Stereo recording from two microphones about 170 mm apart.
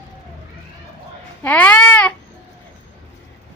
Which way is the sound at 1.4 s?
10° left (ahead or behind).